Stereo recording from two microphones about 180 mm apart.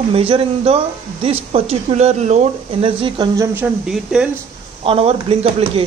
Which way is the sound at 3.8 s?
5° right (ahead or behind).